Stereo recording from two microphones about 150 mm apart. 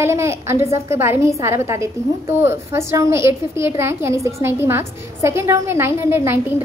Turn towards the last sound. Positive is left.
turn(degrees=-15)  # may be behind; listen again after turning